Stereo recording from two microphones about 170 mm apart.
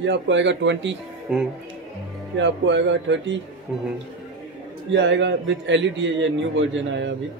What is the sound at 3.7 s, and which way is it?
Speech, 10° right (ahead or behind).